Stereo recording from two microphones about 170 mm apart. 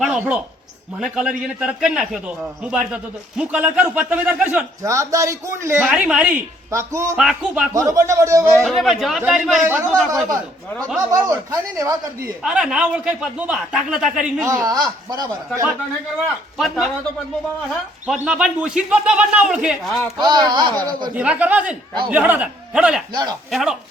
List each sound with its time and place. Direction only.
0.0 s a man's voice: 5° right (ahead or behind)
6.7 s a man's voice: 15° right (ahead or behind)
7.2 s a man's voice: 5° right (ahead or behind)
7.7 s a man's voice: 20° right (ahead or behind)
8.5 s a man's voice: centre (ahead or behind)
11.1 s speech: 20° right (ahead or behind)
12.4 s a man's voice: 5° right (ahead or behind)
14.5 s speech: 20° right (ahead or behind)
16.1 s a man's voice: centre (ahead or behind)
18.0 s a man's voice: 5° right (ahead or behind)
20.1 s speech: 25° right (ahead or behind)
21.2 s a man's voice: 10° right (ahead or behind)
23.1 s speech: 25° right (ahead or behind)
23.5 s a man's voice: centre (ahead or behind)